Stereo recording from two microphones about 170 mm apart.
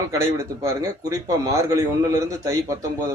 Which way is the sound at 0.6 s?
20° right (ahead or behind).